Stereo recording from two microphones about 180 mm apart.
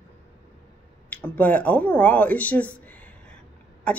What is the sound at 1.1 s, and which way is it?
A woman's voice, 10° left (ahead or behind).